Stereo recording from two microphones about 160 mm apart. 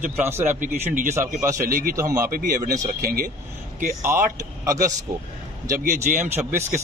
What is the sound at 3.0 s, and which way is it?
Speech, 70° right (ahead or behind).